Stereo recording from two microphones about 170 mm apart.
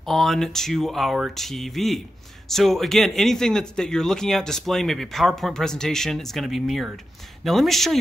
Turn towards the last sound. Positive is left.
turn(degrees=0)  # may be behind; listen again after turning